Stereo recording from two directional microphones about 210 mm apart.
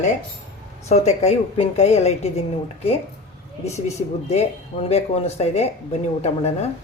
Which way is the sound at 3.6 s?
30° left (ahead or behind).